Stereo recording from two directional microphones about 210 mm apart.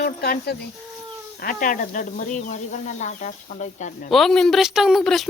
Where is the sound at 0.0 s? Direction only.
45° left (ahead or behind).